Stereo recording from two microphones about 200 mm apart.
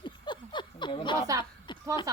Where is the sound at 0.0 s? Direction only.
25° left (ahead or behind).